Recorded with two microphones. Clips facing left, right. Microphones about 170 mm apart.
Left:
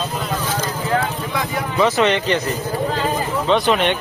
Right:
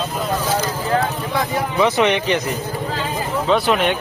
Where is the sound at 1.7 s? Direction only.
15° right (ahead or behind).